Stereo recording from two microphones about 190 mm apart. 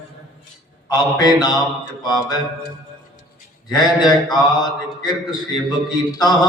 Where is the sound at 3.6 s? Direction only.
20° left (ahead or behind).